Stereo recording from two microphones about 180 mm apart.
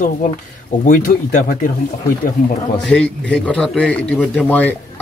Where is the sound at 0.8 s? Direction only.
50° left (ahead or behind).